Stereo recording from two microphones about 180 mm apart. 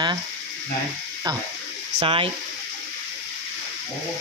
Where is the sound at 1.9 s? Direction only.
30° right (ahead or behind).